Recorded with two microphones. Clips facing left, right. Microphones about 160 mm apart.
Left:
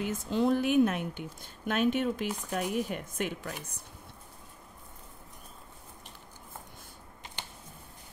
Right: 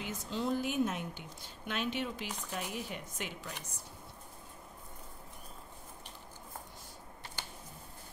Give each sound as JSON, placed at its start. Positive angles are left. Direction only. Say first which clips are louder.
{"t": 0.0, "sound": "a woman's voice", "louder": "left 8 dB", "side_deg": 50}
{"t": 1.7, "sound": "speech", "louder": "left 9 dB", "side_deg": 50}